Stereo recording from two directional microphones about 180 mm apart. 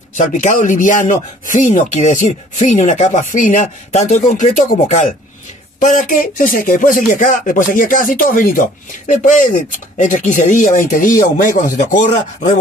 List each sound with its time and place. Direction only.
0.1 s speech: 45° left (ahead or behind)